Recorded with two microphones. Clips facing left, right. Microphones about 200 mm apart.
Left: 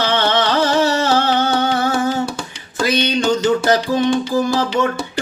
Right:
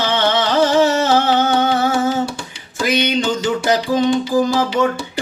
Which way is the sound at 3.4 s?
15° right (ahead or behind).